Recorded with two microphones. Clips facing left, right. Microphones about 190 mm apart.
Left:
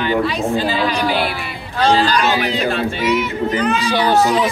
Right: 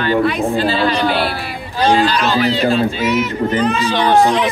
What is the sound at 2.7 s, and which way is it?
Speech, 60° left (ahead or behind).